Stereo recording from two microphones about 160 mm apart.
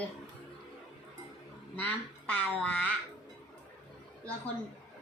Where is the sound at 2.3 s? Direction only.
10° left (ahead or behind).